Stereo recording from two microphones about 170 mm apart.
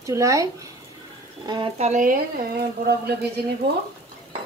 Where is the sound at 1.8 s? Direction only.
45° right (ahead or behind).